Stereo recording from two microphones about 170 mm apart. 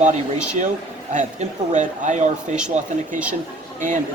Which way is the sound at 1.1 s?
45° right (ahead or behind).